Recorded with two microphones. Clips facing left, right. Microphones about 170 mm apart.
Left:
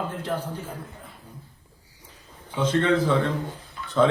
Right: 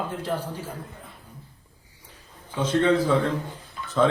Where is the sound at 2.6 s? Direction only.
10° right (ahead or behind).